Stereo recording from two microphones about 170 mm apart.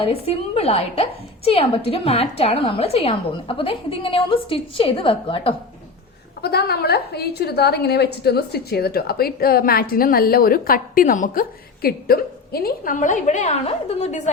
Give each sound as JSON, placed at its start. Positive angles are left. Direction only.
{"t": 0.0, "sound": "a woman's voice", "side_deg": 35}
{"t": 6.4, "sound": "a woman's voice", "side_deg": 70}